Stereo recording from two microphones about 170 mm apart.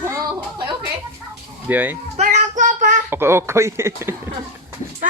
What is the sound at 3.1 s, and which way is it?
Speech, 15° right (ahead or behind).